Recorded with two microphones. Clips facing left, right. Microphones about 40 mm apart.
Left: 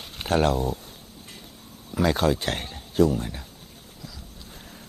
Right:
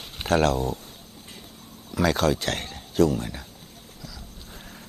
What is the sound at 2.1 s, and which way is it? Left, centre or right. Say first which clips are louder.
Speech: even; centre.